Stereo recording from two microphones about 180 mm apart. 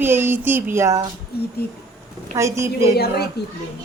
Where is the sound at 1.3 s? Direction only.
60° left (ahead or behind).